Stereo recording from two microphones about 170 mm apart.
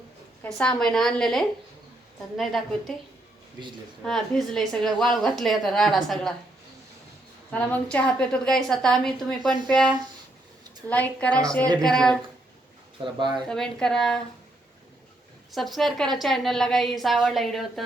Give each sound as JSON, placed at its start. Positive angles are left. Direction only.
{"t": 0.4, "sound": "a woman's voice", "side_deg": 5}
{"t": 4.0, "sound": "a woman's voice", "side_deg": 0}
{"t": 7.5, "sound": "a woman's voice", "side_deg": 10}
{"t": 10.8, "sound": "a woman's voice", "side_deg": 10}
{"t": 13.1, "sound": "speech", "side_deg": -25}
{"t": 13.5, "sound": "a woman's voice", "side_deg": 5}
{"t": 15.5, "sound": "a woman's voice", "side_deg": 0}